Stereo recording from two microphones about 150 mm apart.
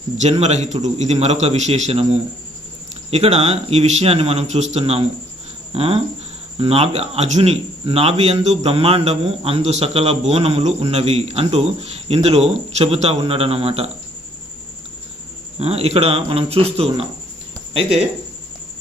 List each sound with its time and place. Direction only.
0.2 s a man's voice: 50° right (ahead or behind)
15.6 s a man's voice: 45° right (ahead or behind)